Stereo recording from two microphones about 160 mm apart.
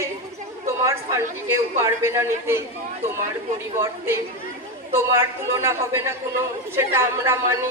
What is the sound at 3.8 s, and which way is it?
A man's voice, 15° right (ahead or behind).